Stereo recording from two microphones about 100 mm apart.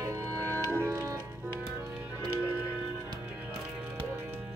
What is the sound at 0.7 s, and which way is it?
Music, 25° right (ahead or behind).